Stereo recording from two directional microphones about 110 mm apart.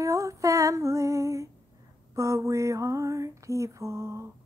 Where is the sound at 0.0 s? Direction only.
30° right (ahead or behind).